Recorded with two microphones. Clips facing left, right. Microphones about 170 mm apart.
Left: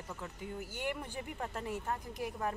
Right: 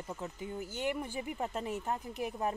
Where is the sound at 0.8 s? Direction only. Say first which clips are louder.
Right 4 dB; 15° right (ahead or behind).